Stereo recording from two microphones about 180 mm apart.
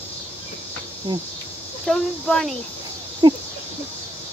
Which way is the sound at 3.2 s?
25° right (ahead or behind).